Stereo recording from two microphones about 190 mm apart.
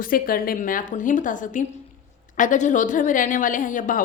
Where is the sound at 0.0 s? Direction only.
50° left (ahead or behind).